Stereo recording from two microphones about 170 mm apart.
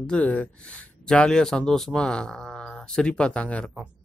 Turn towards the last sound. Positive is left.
turn(degrees=5)  # may be behind; listen again after turning